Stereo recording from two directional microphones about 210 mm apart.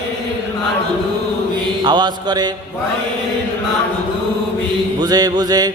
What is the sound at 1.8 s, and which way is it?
Mantra, 20° right (ahead or behind).